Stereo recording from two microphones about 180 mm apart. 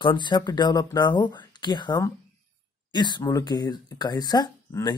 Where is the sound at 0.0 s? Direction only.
25° left (ahead or behind).